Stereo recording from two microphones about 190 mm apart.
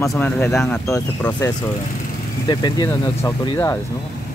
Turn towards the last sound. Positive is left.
turn(degrees=15)  # may be behind; listen again after turning